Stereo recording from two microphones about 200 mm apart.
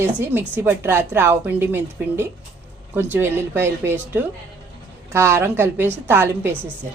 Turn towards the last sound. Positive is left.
turn(degrees=-10)  # may be behind; listen again after turning